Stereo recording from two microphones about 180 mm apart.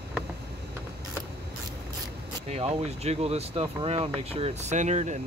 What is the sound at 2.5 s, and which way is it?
Speech, 35° right (ahead or behind).